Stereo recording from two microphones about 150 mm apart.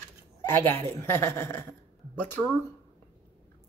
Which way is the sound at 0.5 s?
15° left (ahead or behind).